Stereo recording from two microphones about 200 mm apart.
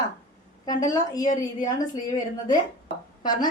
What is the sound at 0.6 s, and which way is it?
A woman's voice, 20° left (ahead or behind).